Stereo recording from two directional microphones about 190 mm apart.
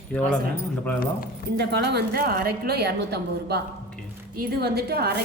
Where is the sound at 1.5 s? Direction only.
60° right (ahead or behind).